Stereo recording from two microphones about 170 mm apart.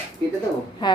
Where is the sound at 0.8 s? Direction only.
25° left (ahead or behind).